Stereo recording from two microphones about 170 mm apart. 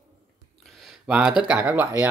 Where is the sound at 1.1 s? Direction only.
5° right (ahead or behind).